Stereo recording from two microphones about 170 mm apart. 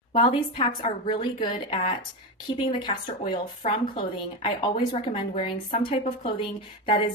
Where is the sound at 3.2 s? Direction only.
30° left (ahead or behind).